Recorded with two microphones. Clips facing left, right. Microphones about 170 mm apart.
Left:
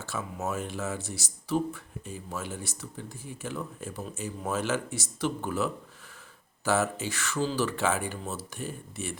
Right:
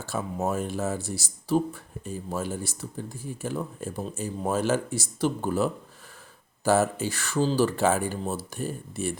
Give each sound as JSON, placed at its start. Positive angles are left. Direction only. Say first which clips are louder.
{"t": 0.0, "sound": "speech", "louder": "right 5 dB", "side_deg": -35}